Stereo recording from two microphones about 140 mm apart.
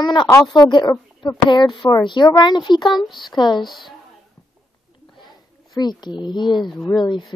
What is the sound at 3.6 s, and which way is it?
Speech, centre (ahead or behind).